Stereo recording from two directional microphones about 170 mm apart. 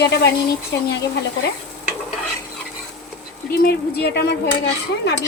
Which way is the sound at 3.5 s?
65° left (ahead or behind).